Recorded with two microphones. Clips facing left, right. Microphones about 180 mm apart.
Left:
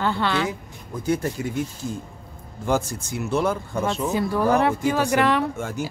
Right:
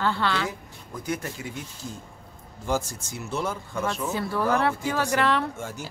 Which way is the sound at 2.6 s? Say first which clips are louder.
Left 4 dB; 60° left (ahead or behind).